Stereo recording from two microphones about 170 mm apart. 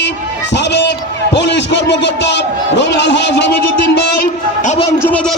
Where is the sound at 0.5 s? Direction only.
90° left.